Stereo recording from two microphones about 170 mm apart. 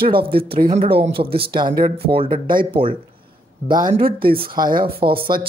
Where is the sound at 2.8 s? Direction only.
30° right (ahead or behind).